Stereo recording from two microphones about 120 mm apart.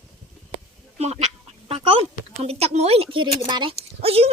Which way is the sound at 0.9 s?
65° right (ahead or behind).